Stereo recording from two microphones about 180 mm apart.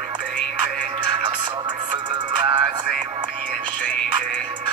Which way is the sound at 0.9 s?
25° right (ahead or behind).